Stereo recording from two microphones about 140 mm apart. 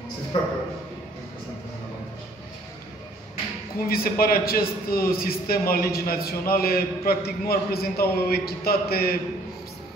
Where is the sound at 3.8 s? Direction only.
90° left.